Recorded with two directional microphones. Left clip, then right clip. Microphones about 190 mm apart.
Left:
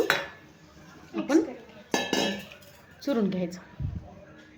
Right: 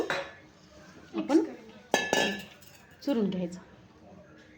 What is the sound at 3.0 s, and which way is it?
Speech, centre (ahead or behind).